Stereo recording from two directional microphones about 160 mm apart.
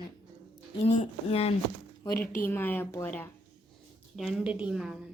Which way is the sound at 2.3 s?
15° left (ahead or behind).